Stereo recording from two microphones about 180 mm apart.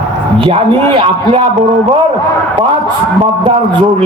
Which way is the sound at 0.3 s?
30° right (ahead or behind).